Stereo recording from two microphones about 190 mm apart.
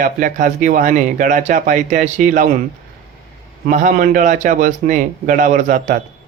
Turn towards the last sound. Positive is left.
turn(degrees=-40)  # may be behind; listen again after turning